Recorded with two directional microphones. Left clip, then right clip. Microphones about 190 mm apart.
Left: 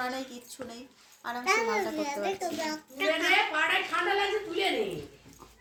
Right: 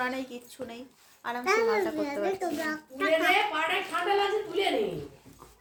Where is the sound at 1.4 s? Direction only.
30° right (ahead or behind).